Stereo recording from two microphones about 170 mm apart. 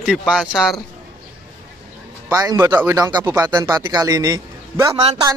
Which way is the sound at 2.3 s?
20° right (ahead or behind).